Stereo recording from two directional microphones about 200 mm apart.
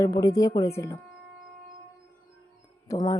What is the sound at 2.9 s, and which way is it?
Speech, 20° left (ahead or behind).